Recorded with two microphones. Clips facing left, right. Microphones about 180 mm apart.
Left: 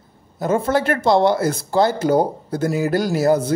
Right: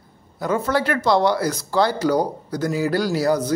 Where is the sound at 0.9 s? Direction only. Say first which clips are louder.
Left 3 dB; 25° left (ahead or behind).